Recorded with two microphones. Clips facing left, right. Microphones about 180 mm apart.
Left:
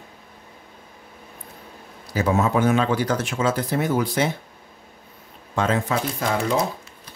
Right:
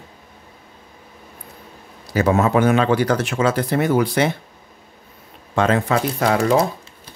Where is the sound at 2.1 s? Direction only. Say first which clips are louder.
Right 4 dB; 70° right (ahead or behind).